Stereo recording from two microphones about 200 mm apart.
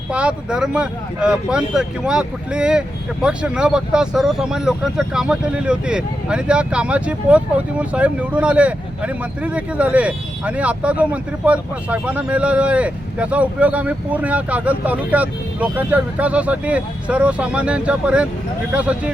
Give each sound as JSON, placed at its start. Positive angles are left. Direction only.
{"t": 0.1, "sound": "speech", "side_deg": -5}